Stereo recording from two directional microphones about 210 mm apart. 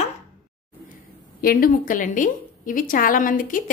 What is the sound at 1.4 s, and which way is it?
A woman's voice, 45° left (ahead or behind).